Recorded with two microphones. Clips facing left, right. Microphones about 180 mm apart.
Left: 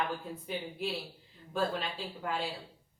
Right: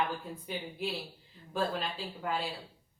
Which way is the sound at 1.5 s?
Centre (ahead or behind).